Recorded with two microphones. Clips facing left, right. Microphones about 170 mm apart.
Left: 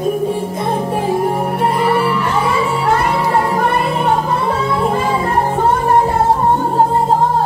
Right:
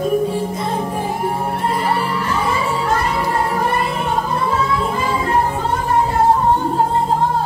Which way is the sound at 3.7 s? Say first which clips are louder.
Left 4 dB; 65° left (ahead or behind).